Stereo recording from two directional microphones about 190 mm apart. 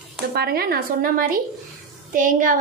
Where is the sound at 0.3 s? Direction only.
55° right (ahead or behind).